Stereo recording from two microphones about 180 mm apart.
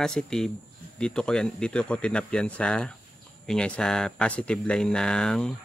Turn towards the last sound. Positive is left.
turn(degrees=5)  # may be behind; listen again after turning